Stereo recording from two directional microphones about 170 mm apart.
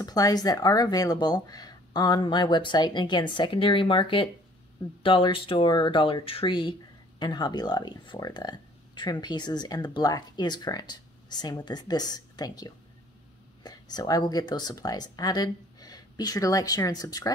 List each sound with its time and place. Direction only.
0.0 s speech: 20° left (ahead or behind)